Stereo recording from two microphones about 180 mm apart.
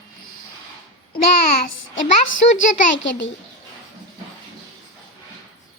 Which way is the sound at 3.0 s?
90° left.